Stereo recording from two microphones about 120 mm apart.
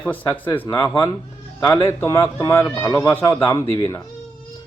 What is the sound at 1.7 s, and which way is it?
A man's voice, 20° left (ahead or behind).